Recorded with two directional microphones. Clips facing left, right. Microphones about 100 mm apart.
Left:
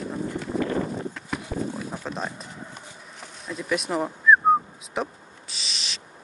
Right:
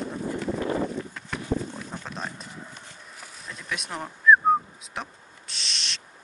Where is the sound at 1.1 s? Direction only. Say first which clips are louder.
Right 1 dB; 5° left (ahead or behind).